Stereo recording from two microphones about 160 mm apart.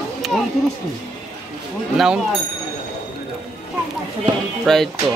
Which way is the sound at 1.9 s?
5° right (ahead or behind).